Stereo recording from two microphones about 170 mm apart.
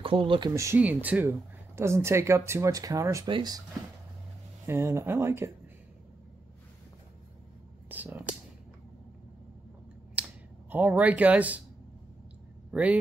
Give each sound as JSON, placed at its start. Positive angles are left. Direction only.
{"t": 0.0, "sound": "speech", "side_deg": -30}
{"t": 4.6, "sound": "speech", "side_deg": -15}
{"t": 7.9, "sound": "speech", "side_deg": -10}
{"t": 10.2, "sound": "a sound", "side_deg": -5}
{"t": 10.7, "sound": "speech", "side_deg": -10}
{"t": 12.7, "sound": "speech", "side_deg": -10}